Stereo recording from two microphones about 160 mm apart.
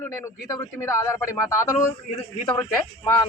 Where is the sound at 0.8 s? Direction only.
15° left (ahead or behind).